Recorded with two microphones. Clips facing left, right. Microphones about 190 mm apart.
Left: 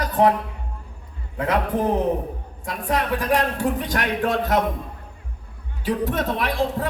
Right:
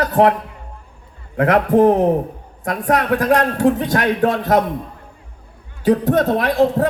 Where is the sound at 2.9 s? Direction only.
75° right (ahead or behind).